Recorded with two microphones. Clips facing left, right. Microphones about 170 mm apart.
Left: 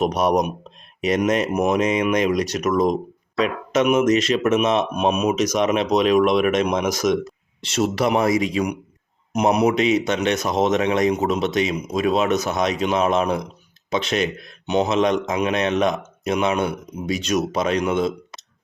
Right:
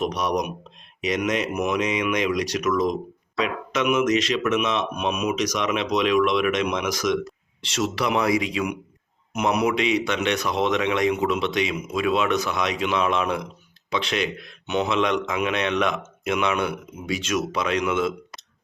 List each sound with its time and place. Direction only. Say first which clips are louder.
0.0 s a man's voice: left 5 dB; 50° left (ahead or behind)